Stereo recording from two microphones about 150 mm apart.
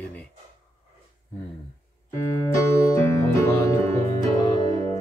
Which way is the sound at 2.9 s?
20° left (ahead or behind).